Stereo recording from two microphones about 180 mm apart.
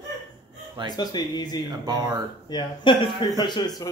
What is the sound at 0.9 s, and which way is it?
Speech, 20° left (ahead or behind).